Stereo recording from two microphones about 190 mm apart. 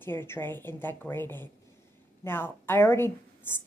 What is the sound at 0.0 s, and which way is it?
A woman's voice, 10° left (ahead or behind).